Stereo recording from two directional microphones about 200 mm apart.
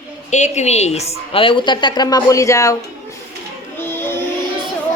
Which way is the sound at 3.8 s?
10° left (ahead or behind).